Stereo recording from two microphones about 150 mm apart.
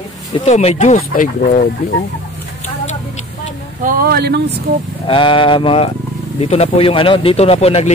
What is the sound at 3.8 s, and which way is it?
Speech, 80° right.